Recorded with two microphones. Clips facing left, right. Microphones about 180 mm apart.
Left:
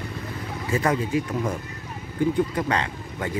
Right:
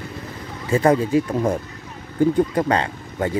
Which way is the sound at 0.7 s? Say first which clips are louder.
Right 7 dB; 30° right (ahead or behind).